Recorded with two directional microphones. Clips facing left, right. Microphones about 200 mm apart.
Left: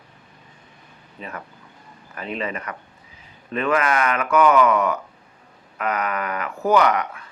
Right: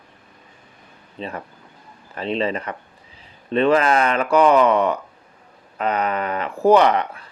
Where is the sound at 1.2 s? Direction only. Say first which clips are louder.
Right 5 dB; 30° right (ahead or behind).